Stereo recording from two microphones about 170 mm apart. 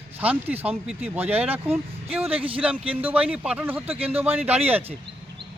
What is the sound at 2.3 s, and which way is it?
Speech, 30° right (ahead or behind).